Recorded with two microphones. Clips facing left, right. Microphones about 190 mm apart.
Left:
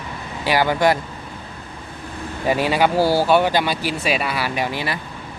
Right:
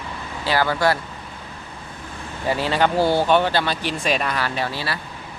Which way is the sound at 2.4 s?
15° left (ahead or behind).